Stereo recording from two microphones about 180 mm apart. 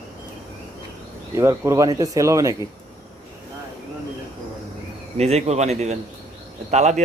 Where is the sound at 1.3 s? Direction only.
15° right (ahead or behind).